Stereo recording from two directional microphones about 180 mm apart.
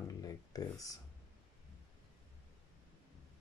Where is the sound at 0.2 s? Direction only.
20° left (ahead or behind).